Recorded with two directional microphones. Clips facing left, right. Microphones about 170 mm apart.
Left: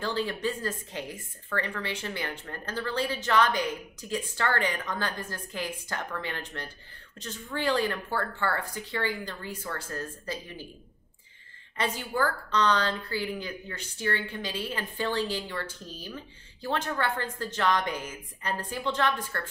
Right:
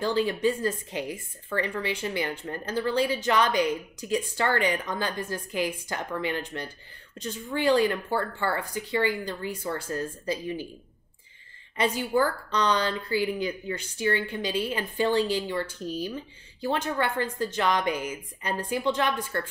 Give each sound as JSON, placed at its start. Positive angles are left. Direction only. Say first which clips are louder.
{"t": 0.0, "sound": "a woman's voice", "louder": "right 5 dB", "side_deg": -15}
{"t": 11.7, "sound": "a woman's voice", "louder": "right 6 dB", "side_deg": -15}